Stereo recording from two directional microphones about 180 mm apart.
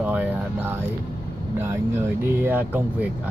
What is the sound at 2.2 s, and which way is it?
Speech, 10° right (ahead or behind).